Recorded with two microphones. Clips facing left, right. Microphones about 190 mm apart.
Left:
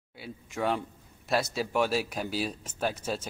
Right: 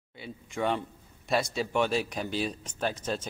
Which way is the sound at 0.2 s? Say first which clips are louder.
Even; 5° left (ahead or behind).